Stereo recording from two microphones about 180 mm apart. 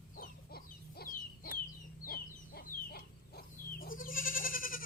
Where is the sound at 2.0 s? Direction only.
55° left (ahead or behind).